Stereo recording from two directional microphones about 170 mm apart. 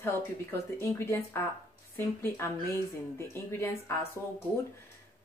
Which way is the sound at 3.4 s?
15° left (ahead or behind).